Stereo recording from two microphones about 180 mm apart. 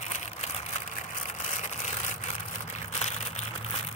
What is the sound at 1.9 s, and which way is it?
Vehicle, 40° left (ahead or behind).